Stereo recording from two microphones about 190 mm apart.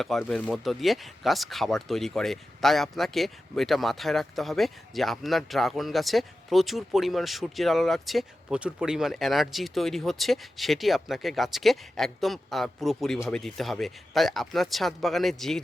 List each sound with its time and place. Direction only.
0.0 s speech: centre (ahead or behind)